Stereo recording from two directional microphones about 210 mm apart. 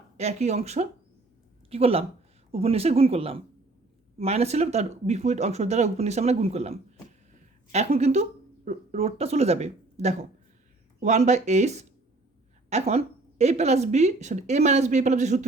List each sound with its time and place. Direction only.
0.2 s speech: 30° right (ahead or behind)
7.3 s a sound: 30° right (ahead or behind)
7.9 s speech: 30° right (ahead or behind)